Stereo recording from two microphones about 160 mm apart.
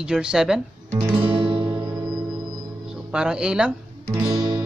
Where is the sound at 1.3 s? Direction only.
35° right (ahead or behind).